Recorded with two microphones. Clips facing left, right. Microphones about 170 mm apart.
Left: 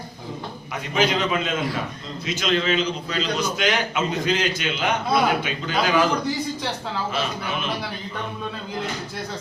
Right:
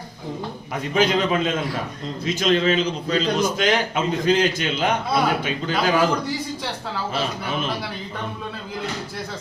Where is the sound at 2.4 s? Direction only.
35° right (ahead or behind).